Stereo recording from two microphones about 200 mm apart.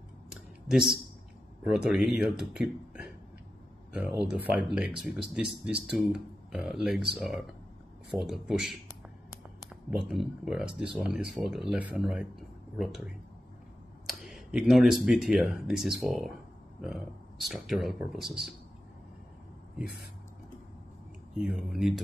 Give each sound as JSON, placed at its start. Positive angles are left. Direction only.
{"t": 1.6, "sound": "speech", "side_deg": -5}
{"t": 3.9, "sound": "speech", "side_deg": -5}
{"t": 10.7, "sound": "speech", "side_deg": -25}
{"t": 11.1, "sound": "speech", "side_deg": -5}
{"t": 21.4, "sound": "speech", "side_deg": 0}